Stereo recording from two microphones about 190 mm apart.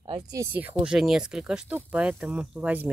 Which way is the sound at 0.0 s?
20° right (ahead or behind).